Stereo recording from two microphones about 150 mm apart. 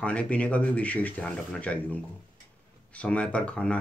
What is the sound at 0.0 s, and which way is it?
Speech, 10° left (ahead or behind).